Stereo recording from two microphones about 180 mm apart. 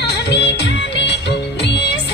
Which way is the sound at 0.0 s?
65° left (ahead or behind).